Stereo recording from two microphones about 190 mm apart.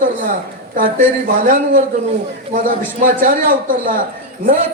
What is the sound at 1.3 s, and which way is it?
A man's voice, 50° right (ahead or behind).